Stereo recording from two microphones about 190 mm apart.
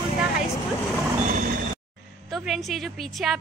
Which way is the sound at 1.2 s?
45° right (ahead or behind).